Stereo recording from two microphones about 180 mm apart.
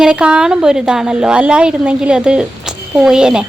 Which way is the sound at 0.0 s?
5° right (ahead or behind).